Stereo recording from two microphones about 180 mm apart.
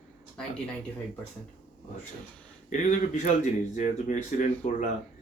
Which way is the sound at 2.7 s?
45° left (ahead or behind).